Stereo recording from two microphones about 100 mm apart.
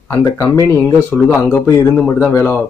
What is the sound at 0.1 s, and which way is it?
Speech, 35° left (ahead or behind).